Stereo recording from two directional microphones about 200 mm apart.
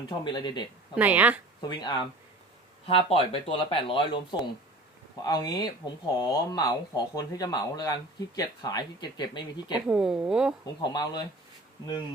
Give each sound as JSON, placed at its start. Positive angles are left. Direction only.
{"t": 0.3, "sound": "speech", "side_deg": 20}
{"t": 0.9, "sound": "a woman's voice", "side_deg": -10}
{"t": 1.6, "sound": "speech", "side_deg": 20}
{"t": 9.7, "sound": "speech", "side_deg": -5}
{"t": 10.8, "sound": "speech", "side_deg": 20}